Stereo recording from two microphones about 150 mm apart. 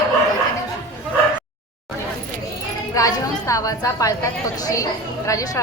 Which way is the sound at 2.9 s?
20° left (ahead or behind).